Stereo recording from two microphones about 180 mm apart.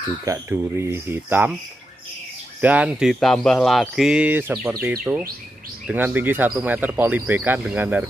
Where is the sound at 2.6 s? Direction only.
5° right (ahead or behind).